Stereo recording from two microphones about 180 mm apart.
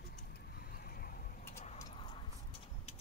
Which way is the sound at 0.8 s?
55° left (ahead or behind).